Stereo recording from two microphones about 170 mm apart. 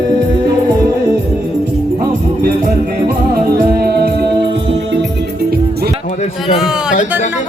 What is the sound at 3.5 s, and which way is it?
Music, 60° right (ahead or behind).